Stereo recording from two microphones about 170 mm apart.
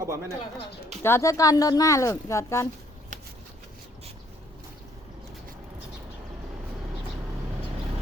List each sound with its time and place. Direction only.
0.0 s speech: 15° right (ahead or behind)
1.0 s speech: 15° left (ahead or behind)